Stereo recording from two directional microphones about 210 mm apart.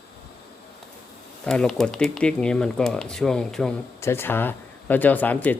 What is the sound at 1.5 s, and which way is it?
Speech, 5° left (ahead or behind).